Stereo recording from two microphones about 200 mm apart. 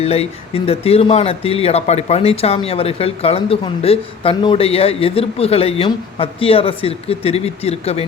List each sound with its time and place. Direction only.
0.0 s speech: 30° left (ahead or behind)